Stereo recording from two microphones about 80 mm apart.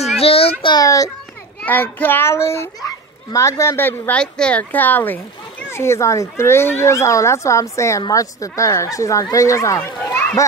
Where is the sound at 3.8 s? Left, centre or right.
Left.